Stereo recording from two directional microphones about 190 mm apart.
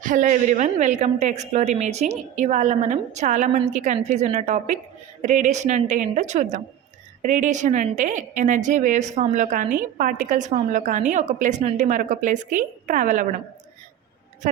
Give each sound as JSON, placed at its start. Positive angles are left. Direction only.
{"t": 0.0, "sound": "a woman's voice", "side_deg": -45}
{"t": 14.4, "sound": "speech", "side_deg": -45}